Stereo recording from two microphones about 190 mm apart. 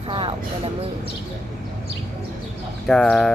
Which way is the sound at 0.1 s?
25° right (ahead or behind).